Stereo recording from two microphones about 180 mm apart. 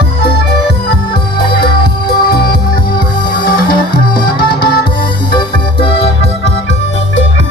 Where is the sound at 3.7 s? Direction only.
25° left (ahead or behind).